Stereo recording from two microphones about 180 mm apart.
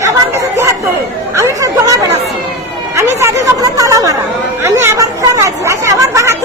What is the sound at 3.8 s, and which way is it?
Chatter, 20° right (ahead or behind).